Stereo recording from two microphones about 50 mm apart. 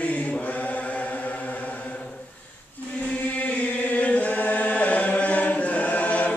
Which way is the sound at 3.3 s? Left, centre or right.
Left.